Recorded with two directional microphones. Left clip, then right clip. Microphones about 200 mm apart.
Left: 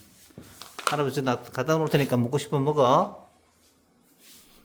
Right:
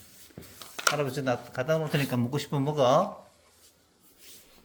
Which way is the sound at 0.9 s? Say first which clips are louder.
Left 3 dB; 30° left (ahead or behind).